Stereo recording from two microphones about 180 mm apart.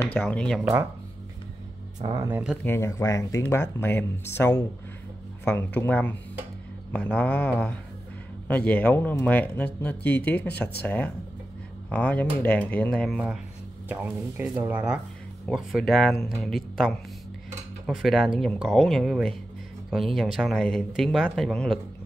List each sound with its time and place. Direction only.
0.2 s speech: 5° left (ahead or behind)
2.5 s speech: 15° left (ahead or behind)